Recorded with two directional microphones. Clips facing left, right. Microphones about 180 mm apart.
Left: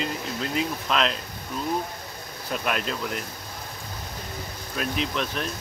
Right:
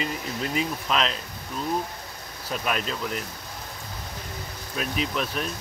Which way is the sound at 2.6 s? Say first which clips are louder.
Even; centre (ahead or behind).